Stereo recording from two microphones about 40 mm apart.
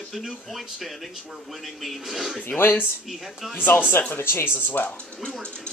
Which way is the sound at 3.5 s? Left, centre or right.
Left.